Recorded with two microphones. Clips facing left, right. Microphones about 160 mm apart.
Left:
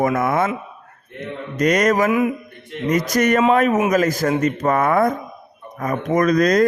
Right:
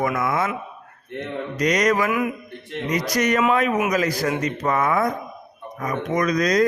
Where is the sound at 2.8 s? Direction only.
50° left (ahead or behind).